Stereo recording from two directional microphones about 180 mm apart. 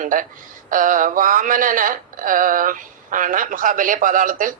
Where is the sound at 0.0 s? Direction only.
50° right (ahead or behind).